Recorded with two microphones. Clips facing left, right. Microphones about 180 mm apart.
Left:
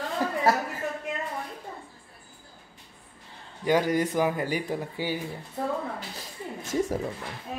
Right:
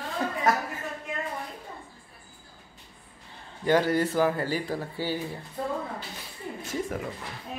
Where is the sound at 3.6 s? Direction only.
10° left (ahead or behind).